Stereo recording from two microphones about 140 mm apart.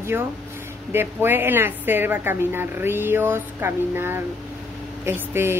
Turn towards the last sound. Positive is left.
turn(degrees=-15)  # may be behind; listen again after turning